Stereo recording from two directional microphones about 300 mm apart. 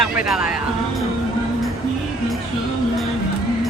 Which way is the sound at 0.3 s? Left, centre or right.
Centre.